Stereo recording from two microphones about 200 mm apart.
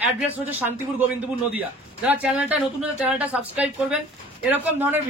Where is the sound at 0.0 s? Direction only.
10° right (ahead or behind).